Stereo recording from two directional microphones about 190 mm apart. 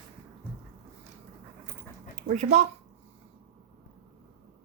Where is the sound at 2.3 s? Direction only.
35° right (ahead or behind).